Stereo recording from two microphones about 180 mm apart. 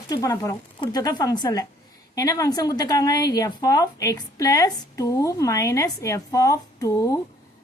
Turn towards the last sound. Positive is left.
turn(degrees=20)  # may be behind; listen again after turning